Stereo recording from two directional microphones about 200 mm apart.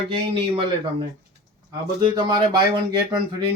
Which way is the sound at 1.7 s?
20° right (ahead or behind).